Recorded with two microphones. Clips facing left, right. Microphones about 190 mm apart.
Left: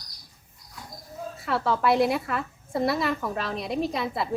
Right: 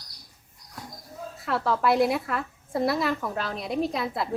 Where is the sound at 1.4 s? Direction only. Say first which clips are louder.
Even; centre (ahead or behind).